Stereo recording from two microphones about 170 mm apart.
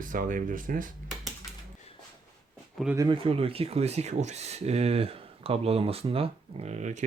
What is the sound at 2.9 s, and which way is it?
Speech, 20° right (ahead or behind).